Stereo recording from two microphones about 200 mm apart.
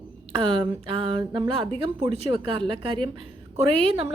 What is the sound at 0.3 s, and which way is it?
A woman's voice, 25° right (ahead or behind).